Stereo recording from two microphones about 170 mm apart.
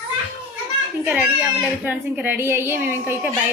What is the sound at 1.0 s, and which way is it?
Speech, 10° right (ahead or behind).